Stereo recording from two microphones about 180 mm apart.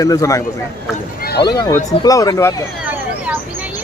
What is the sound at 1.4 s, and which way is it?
Speech, 25° left (ahead or behind).